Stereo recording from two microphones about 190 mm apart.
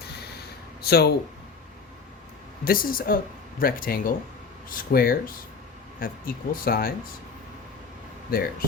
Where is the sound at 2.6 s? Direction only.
50° left (ahead or behind).